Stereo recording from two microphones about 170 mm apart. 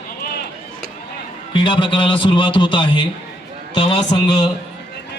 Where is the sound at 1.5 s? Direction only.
30° left (ahead or behind).